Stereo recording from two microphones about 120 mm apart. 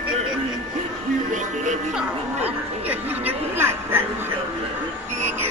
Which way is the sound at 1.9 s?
15° right (ahead or behind).